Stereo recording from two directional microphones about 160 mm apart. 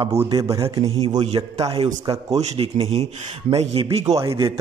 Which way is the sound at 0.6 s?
35° right (ahead or behind).